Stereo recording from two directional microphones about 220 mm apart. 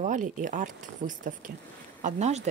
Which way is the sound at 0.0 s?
35° right (ahead or behind).